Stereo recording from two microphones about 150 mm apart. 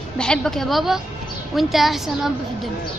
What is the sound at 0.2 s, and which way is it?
Speech, 5° left (ahead or behind).